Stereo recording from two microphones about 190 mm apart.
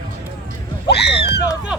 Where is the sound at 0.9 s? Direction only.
60° left (ahead or behind).